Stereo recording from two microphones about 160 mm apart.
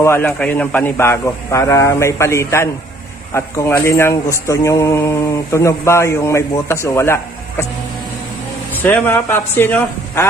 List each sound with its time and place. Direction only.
0.0 s speech: 15° left (ahead or behind)
8.7 s speech: 10° left (ahead or behind)